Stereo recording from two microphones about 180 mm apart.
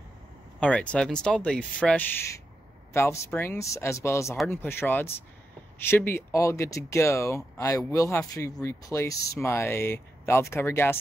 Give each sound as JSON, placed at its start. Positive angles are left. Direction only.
{"t": 0.6, "sound": "speech", "side_deg": 5}